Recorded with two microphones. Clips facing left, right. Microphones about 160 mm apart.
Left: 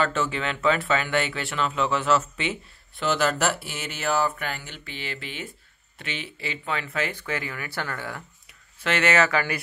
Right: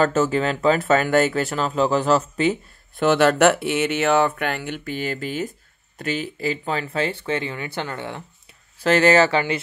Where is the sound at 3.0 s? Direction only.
55° right (ahead or behind); by 8.5 s 25° right (ahead or behind).